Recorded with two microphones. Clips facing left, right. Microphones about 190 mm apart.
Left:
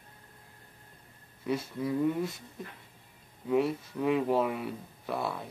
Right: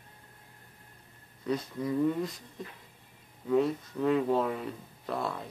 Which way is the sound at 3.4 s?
10° left (ahead or behind).